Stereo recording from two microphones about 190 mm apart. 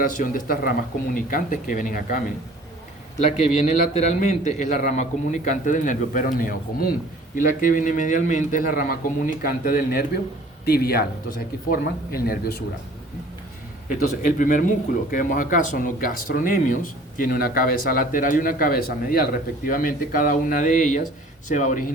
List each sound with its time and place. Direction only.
0.0 s speech: 45° left (ahead or behind)
3.9 s speech: 35° left (ahead or behind); by 12.6 s 55° left (ahead or behind)
14.3 s speech: 45° left (ahead or behind)